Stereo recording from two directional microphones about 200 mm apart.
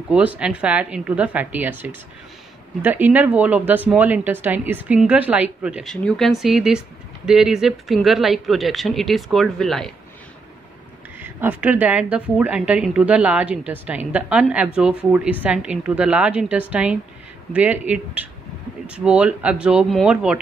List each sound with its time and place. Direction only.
0.1 s a woman's voice: 5° right (ahead or behind)
11.1 s a woman's voice: 10° right (ahead or behind)